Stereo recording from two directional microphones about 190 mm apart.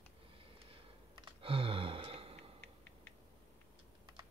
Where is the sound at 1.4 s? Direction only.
30° right (ahead or behind).